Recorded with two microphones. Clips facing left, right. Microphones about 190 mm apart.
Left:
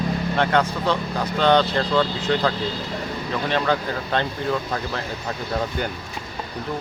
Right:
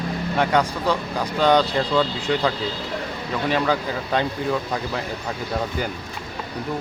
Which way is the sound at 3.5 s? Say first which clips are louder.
Even; 10° right (ahead or behind).